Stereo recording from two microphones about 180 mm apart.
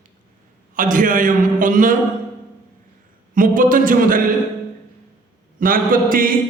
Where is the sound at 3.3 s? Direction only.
50° right (ahead or behind).